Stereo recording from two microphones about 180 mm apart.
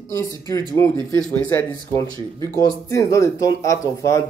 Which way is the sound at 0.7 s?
15° left (ahead or behind).